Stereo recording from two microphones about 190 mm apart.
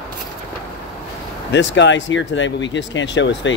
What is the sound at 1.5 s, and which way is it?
Speech, 70° left (ahead or behind).